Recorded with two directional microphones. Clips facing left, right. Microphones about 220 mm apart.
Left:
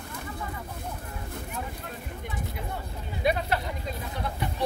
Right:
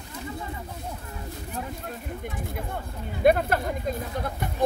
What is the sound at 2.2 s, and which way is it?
Speech, 50° right (ahead or behind).